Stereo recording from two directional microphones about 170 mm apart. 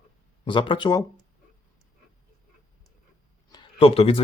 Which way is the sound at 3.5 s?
35° left (ahead or behind).